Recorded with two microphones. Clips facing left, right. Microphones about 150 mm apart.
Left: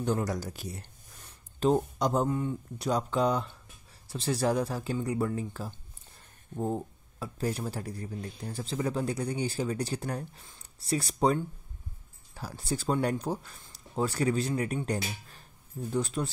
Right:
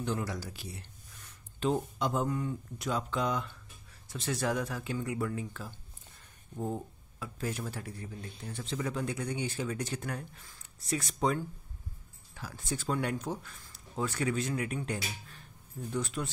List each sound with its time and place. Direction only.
0.0 s a man's voice: 45° left (ahead or behind)
1.2 s a sound: 40° left (ahead or behind)
2.2 s speech: 25° left (ahead or behind)
2.9 s speech: 35° left (ahead or behind)
12.4 s speech: 35° left (ahead or behind)